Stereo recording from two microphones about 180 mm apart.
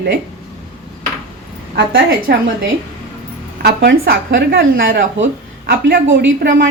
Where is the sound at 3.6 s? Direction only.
60° right (ahead or behind).